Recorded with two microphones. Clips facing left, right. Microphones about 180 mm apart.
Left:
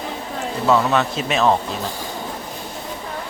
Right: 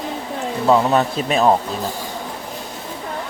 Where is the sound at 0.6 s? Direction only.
30° right (ahead or behind).